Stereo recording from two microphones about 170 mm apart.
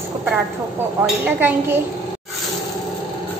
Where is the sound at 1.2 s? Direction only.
10° right (ahead or behind).